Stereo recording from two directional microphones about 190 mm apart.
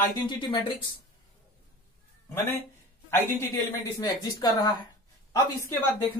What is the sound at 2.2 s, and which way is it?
Speech, 10° left (ahead or behind).